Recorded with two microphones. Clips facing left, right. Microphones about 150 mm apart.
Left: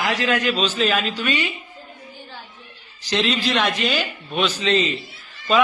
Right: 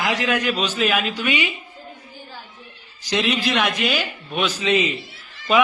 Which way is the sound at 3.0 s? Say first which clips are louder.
Even; 10° right (ahead or behind).